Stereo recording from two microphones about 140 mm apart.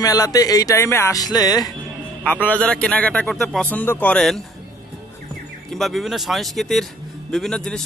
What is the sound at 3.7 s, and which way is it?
Speech, 15° left (ahead or behind).